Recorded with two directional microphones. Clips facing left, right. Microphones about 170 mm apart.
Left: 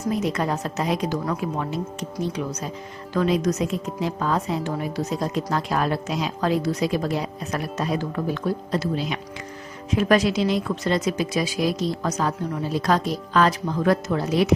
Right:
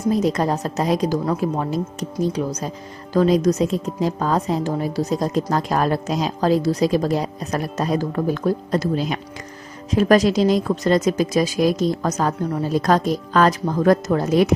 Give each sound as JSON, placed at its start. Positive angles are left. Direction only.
{"t": 0.1, "sound": "a woman's voice", "side_deg": -35}